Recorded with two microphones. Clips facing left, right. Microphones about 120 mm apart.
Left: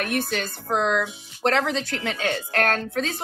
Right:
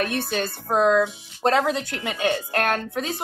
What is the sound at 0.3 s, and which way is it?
A woman's voice, 20° right (ahead or behind).